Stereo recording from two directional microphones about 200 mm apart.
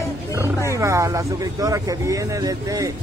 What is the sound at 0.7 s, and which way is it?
Speech, 15° right (ahead or behind).